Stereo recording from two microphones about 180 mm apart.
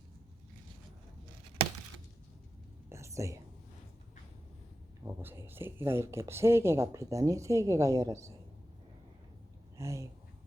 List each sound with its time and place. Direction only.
2.9 s whispering: 15° right (ahead or behind)
5.0 s speech: 15° right (ahead or behind)
9.7 s speech: 15° right (ahead or behind)